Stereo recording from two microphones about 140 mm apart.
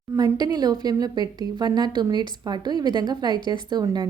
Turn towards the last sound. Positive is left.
turn(degrees=-30)  # may be behind; listen again after turning